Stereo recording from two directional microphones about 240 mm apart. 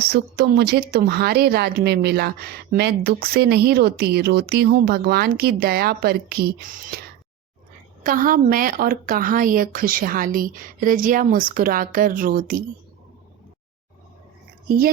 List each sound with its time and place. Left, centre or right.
0.0 s speech: right
8.0 s speech: right